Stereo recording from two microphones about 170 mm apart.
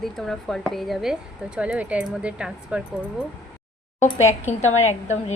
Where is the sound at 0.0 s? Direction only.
Centre (ahead or behind).